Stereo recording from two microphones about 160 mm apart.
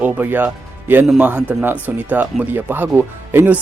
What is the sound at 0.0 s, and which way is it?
Speech, 10° right (ahead or behind).